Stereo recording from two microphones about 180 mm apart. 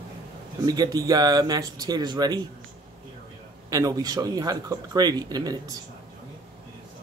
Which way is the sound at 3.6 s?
20° right (ahead or behind).